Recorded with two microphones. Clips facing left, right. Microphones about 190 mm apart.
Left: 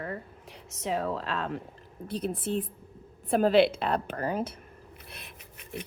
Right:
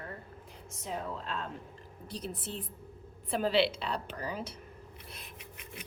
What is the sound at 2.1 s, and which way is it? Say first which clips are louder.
A woman's voice: left 9 dB; 55° left (ahead or behind).